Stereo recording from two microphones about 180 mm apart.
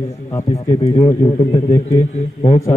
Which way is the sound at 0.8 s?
35° left (ahead or behind).